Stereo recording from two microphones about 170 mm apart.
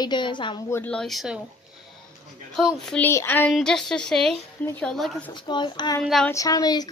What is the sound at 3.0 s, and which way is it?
A child's voice, 10° left (ahead or behind).